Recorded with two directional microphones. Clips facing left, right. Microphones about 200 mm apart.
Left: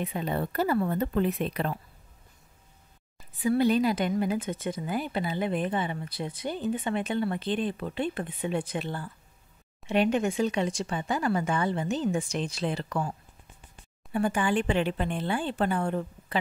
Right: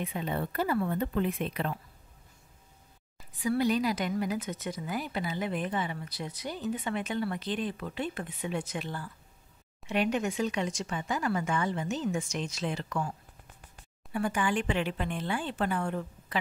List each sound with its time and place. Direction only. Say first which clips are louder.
0.0 s speech: left 3 dB; 40° left (ahead or behind)
3.4 s speech: left 4 dB; 25° left (ahead or behind)
14.1 s speech: left 3 dB; 30° left (ahead or behind)